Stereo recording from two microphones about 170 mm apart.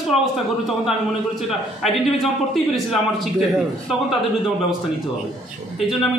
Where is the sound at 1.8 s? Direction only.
Centre (ahead or behind).